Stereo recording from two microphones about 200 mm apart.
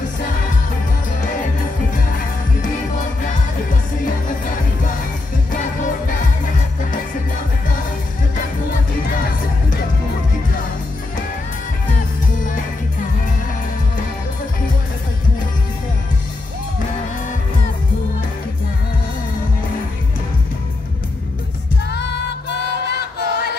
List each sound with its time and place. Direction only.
21.9 s music: 60° left (ahead or behind)